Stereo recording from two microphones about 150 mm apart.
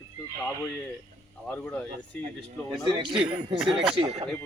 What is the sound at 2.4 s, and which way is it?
Speech, 35° right (ahead or behind).